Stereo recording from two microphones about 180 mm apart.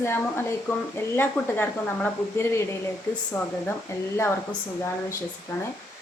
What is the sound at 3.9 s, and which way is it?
Speech, 15° left (ahead or behind).